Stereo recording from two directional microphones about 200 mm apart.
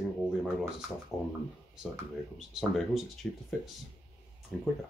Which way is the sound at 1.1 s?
15° left (ahead or behind).